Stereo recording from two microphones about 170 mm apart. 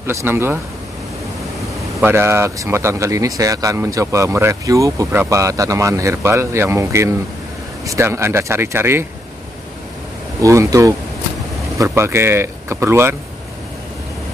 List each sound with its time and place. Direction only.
0.0 s speech: 15° right (ahead or behind)
2.0 s speech: 15° right (ahead or behind)
10.4 s speech: 20° right (ahead or behind)